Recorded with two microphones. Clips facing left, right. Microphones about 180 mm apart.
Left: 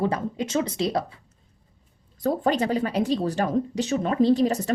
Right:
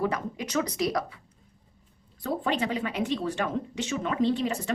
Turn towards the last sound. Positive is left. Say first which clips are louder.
# left 6 dB
turn(degrees=40)  # may be behind; listen again after turning